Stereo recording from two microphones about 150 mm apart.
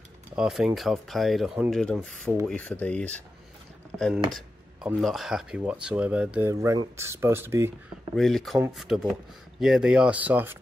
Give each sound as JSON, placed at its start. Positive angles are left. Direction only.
{"t": 0.4, "sound": "speech", "side_deg": -5}
{"t": 5.0, "sound": "speech", "side_deg": 0}
{"t": 6.5, "sound": "speech", "side_deg": -20}
{"t": 8.2, "sound": "speech", "side_deg": 0}